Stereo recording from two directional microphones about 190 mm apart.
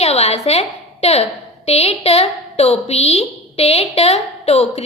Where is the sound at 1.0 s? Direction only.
35° left (ahead or behind).